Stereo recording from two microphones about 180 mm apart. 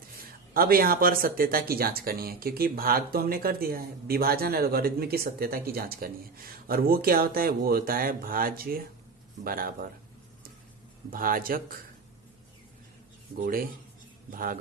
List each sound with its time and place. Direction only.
0.5 s a man's voice: 55° right (ahead or behind)
11.1 s a man's voice: 50° right (ahead or behind)
13.4 s a man's voice: 55° right (ahead or behind)